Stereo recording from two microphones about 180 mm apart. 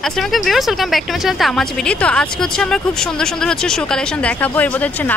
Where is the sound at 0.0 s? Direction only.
Centre (ahead or behind).